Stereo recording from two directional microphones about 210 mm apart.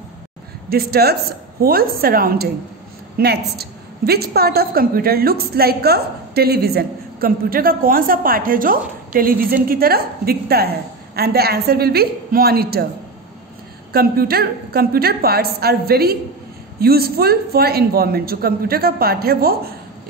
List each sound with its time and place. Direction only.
0.7 s a woman's voice: 50° right (ahead or behind)
13.9 s a woman's voice: 45° right (ahead or behind)